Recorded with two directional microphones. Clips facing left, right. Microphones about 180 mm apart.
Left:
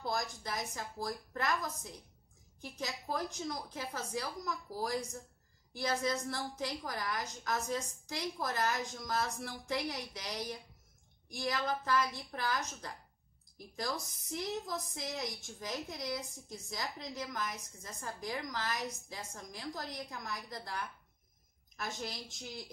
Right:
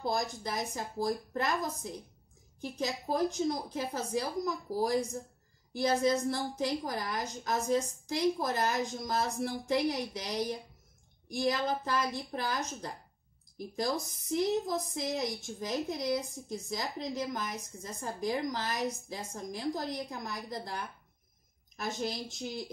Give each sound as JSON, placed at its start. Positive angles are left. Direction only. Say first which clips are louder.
{"t": 0.0, "sound": "a woman's voice", "louder": "right 5 dB", "side_deg": -25}